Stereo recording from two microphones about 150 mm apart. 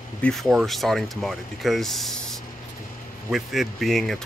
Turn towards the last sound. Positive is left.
turn(degrees=0)  # may be behind; listen again after turning